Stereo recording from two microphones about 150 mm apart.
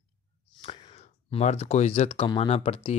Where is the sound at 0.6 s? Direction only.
35° left (ahead or behind).